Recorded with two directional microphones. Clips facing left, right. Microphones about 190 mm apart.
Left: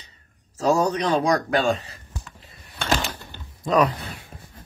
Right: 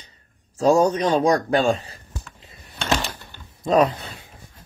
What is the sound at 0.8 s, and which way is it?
Speech, 25° right (ahead or behind).